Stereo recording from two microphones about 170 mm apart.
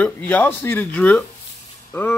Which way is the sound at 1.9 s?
10° left (ahead or behind).